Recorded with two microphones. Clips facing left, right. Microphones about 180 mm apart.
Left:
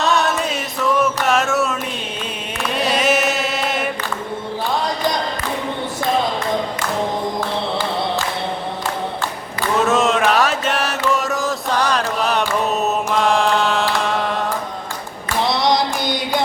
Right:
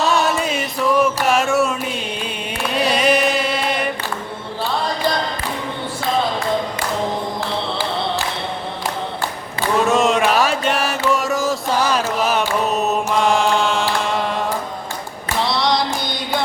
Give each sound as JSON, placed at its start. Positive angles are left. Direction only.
{"t": 0.0, "sound": "music", "side_deg": 0}
{"t": 2.6, "sound": "chant", "side_deg": 0}
{"t": 9.7, "sound": "mantra", "side_deg": 0}